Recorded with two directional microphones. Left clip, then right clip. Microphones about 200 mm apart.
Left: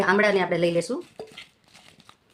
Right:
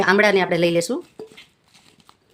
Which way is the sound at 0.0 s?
45° right (ahead or behind).